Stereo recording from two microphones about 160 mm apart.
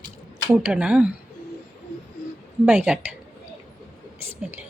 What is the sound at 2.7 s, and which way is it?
Speech, 10° right (ahead or behind).